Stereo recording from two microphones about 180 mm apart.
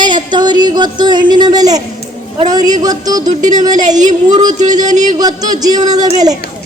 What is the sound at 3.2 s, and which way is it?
Speech, 45° right (ahead or behind).